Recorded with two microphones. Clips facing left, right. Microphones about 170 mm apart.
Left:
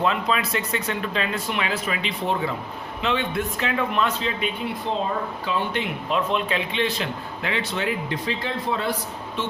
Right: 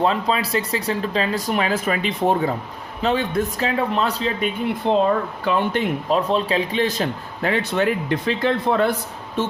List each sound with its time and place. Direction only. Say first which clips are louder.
0.0 s speech: right 3 dB; 35° right (ahead or behind)
4.9 s speech: right 9 dB; 65° right (ahead or behind)
5.5 s speech: right 7 dB; 50° right (ahead or behind)
8.4 s speech: right 10 dB; 55° right (ahead or behind)